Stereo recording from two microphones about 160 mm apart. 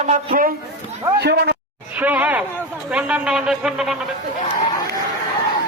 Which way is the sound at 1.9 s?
10° right (ahead or behind).